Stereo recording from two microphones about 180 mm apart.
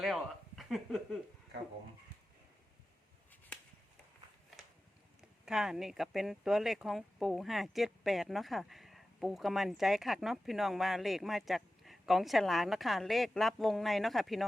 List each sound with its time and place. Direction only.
0.0 s speech: centre (ahead or behind)
5.5 s speech: 5° right (ahead or behind)